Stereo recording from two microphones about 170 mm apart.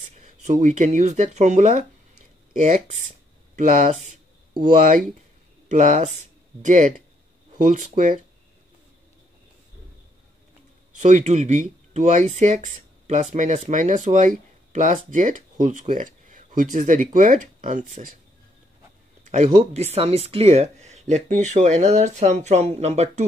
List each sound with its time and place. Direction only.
0.0 s speech: 45° right (ahead or behind)
5.7 s speech: 45° right (ahead or behind)
11.0 s speech: 45° right (ahead or behind)
19.5 s speech: 40° right (ahead or behind)